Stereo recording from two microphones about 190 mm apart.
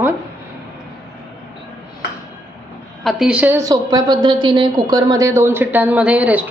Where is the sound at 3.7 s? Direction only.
20° right (ahead or behind).